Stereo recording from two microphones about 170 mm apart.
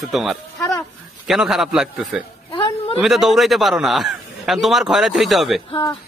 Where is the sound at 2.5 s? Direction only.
25° left (ahead or behind).